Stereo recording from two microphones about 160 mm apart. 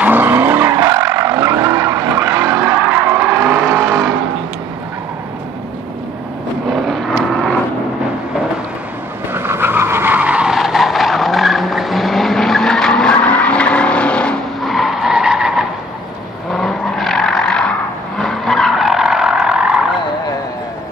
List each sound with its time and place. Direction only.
0.0 s vehicle: 15° right (ahead or behind)
6.7 s vehicle: centre (ahead or behind)
9.3 s vehicle: 15° right (ahead or behind)